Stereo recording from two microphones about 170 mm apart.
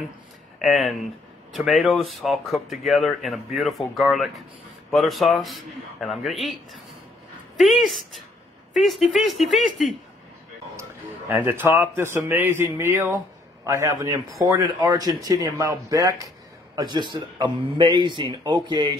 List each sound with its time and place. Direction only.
0.6 s speech: centre (ahead or behind)
10.8 s a man's voice: 15° right (ahead or behind)